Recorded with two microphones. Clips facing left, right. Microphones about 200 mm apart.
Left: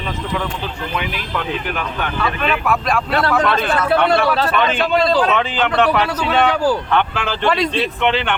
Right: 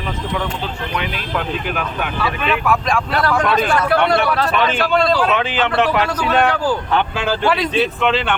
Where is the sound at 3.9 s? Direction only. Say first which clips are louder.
Left 1 dB; 25° left (ahead or behind).